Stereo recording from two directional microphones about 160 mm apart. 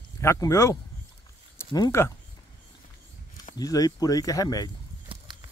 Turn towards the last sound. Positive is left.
turn(degrees=20)  # may be behind; listen again after turning